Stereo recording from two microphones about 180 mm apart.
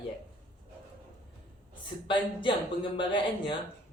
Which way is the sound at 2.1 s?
25° left (ahead or behind).